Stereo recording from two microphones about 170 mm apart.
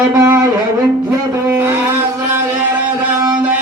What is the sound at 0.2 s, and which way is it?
Wind instrument, 15° right (ahead or behind).